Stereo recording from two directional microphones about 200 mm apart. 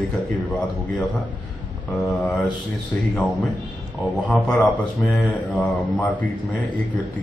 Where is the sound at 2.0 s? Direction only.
5° left (ahead or behind).